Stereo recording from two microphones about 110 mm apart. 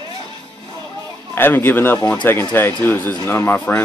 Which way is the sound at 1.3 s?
20° left (ahead or behind).